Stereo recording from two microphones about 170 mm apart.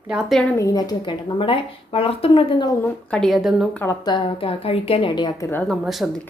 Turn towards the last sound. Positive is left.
turn(degrees=0)  # may be behind; listen again after turning